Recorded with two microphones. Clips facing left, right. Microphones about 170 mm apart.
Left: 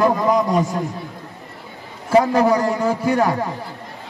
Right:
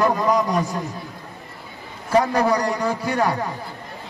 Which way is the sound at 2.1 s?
20° left (ahead or behind).